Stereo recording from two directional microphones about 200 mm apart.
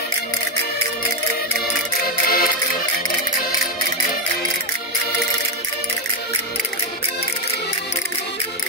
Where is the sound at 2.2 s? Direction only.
45° left (ahead or behind).